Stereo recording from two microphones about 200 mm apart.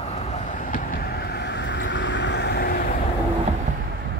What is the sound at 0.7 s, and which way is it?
Vehicle, 50° left (ahead or behind).